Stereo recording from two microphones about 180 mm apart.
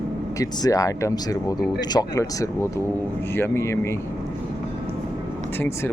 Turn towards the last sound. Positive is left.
turn(degrees=15)  # may be behind; listen again after turning